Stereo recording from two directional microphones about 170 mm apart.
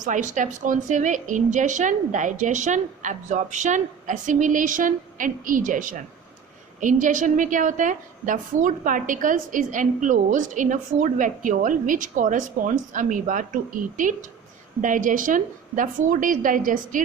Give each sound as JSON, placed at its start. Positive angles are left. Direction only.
{"t": 0.0, "sound": "a woman's voice", "side_deg": -45}